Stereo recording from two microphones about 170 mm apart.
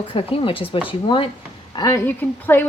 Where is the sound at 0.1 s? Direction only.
35° left (ahead or behind).